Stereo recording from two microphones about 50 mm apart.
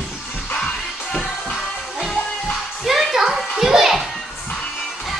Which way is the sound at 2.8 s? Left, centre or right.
Centre.